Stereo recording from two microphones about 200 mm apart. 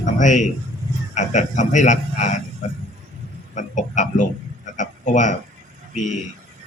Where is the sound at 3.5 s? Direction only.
40° left (ahead or behind).